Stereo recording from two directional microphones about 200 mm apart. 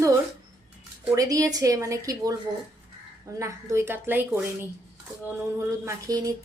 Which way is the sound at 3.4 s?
15° right (ahead or behind).